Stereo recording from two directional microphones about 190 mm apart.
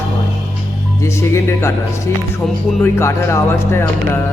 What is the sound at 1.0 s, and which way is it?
Speech, 15° left (ahead or behind).